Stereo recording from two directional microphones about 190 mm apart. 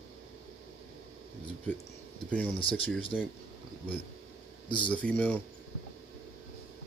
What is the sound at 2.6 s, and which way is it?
Speech, 30° left (ahead or behind).